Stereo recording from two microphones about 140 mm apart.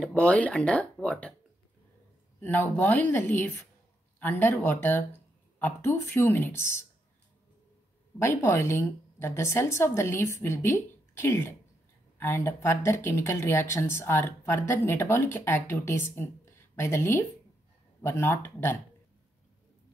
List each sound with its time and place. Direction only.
0.0 s speech: 5° left (ahead or behind)
2.4 s speech: 15° left (ahead or behind)
8.2 s speech: 15° left (ahead or behind)